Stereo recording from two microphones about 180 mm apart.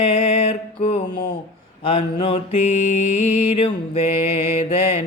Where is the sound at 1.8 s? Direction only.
30° left (ahead or behind).